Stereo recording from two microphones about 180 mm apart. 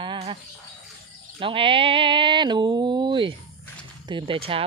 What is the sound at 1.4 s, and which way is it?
Speech, 30° right (ahead or behind).